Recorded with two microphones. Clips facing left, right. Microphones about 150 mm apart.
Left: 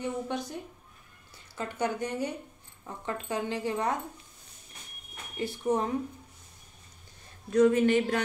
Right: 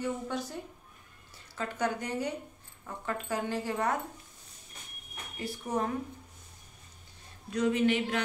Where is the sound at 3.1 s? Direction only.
20° left (ahead or behind).